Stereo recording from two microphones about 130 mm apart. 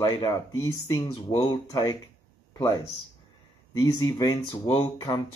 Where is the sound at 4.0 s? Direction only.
35° left (ahead or behind).